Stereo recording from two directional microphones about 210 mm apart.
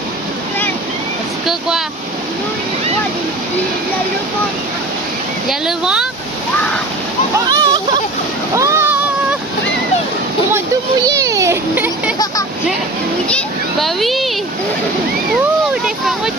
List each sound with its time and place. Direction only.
5.5 s speech: 5° right (ahead or behind)
7.3 s splash: 15° right (ahead or behind)
8.5 s a sound: 15° right (ahead or behind)
11.0 s children playing: 15° right (ahead or behind)
13.2 s a child's voice: 5° left (ahead or behind)
15.7 s speech: centre (ahead or behind)